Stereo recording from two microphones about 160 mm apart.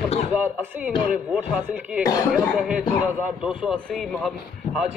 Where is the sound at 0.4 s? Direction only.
10° right (ahead or behind).